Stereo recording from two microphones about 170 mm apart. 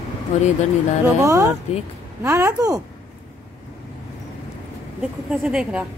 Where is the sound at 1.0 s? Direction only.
20° right (ahead or behind).